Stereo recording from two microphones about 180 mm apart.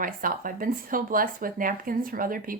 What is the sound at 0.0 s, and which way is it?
Speech, 50° right (ahead or behind).